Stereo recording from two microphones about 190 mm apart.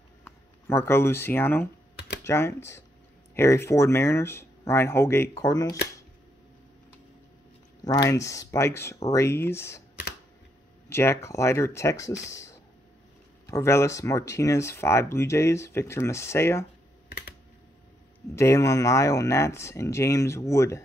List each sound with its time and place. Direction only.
0.2 s speech: 15° left (ahead or behind)
7.8 s speech: 20° left (ahead or behind)
10.9 s speech: 15° left (ahead or behind)
18.3 s speech: 15° left (ahead or behind)